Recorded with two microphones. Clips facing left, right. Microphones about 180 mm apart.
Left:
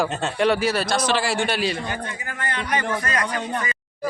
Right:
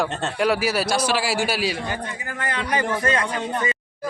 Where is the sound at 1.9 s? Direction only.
30° right (ahead or behind).